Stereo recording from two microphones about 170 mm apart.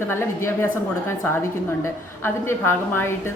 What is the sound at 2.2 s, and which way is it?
Speech, 15° left (ahead or behind).